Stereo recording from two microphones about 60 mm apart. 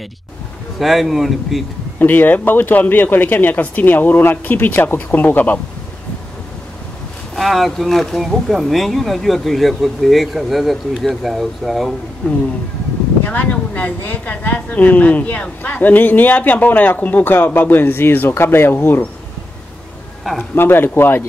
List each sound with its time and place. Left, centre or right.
0.7 s speech: centre
2.0 s speech: left
7.3 s speech: centre
12.2 s a woman's voice: left
20.5 s speech: left